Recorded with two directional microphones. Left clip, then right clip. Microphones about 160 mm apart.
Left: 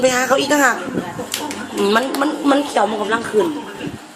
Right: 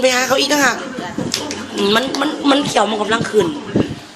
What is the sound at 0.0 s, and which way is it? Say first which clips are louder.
Speech: right 1 dB; 10° left (ahead or behind).